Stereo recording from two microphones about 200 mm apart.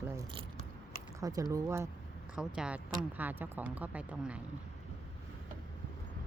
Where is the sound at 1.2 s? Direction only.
20° right (ahead or behind).